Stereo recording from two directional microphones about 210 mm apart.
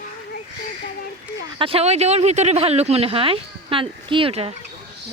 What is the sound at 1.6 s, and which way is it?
Speech, 30° right (ahead or behind).